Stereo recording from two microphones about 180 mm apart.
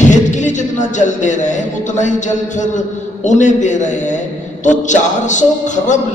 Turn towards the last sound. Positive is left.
turn(degrees=45)  # may be behind; listen again after turning